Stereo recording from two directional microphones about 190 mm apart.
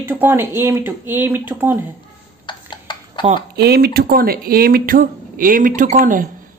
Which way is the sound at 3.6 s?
55° right (ahead or behind).